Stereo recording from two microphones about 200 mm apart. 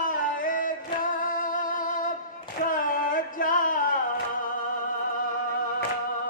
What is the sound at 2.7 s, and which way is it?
Music, 45° left (ahead or behind).